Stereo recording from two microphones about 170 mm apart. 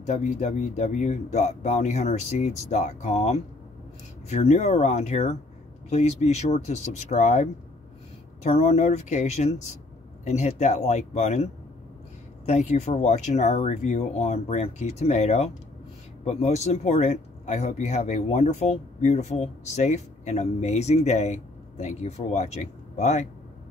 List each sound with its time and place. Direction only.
0.0 s speech: 45° left (ahead or behind)
8.5 s speech: 40° left (ahead or behind)